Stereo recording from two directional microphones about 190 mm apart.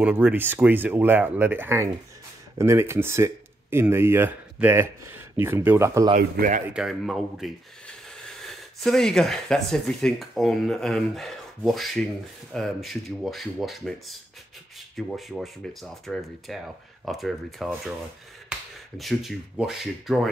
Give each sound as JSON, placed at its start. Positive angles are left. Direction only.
{"t": 0.0, "sound": "speech", "side_deg": -5}
{"t": 6.1, "sound": "speech", "side_deg": -45}
{"t": 6.7, "sound": "speech", "side_deg": 0}
{"t": 18.5, "sound": "finger snapping", "side_deg": -5}
{"t": 18.9, "sound": "speech", "side_deg": 0}